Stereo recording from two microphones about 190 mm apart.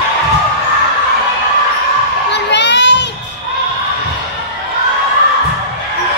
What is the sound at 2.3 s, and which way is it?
Crowd, 65° left (ahead or behind).